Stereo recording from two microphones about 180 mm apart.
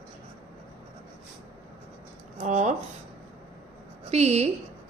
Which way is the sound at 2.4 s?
40° right (ahead or behind).